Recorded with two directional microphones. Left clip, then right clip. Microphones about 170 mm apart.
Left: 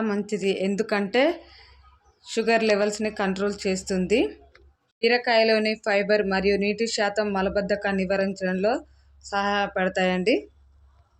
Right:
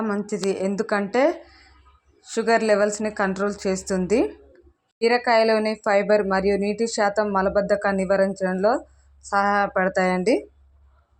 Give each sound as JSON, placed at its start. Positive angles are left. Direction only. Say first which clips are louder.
{"t": 0.4, "sound": "speech", "louder": "right 1 dB", "side_deg": -5}